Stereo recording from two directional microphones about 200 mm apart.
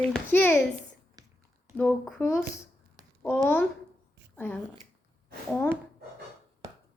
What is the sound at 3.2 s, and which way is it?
A woman's voice, 10° left (ahead or behind).